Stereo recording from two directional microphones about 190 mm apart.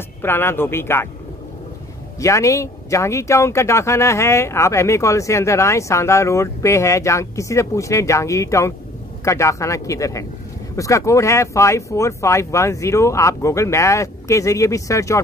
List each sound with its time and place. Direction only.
0.2 s speech: 10° left (ahead or behind)
2.1 s speech: 15° left (ahead or behind)